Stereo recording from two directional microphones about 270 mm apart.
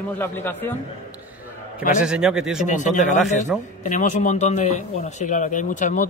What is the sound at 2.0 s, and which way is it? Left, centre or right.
Speech, centre.